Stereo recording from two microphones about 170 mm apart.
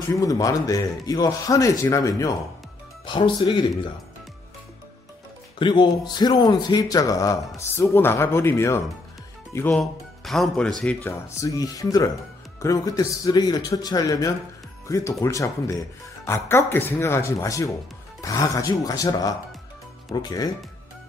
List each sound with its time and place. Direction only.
0.1 s speech: 20° left (ahead or behind)
5.6 s speech: 25° left (ahead or behind)
9.7 s speech: centre (ahead or behind)
11.1 s speech: 15° left (ahead or behind)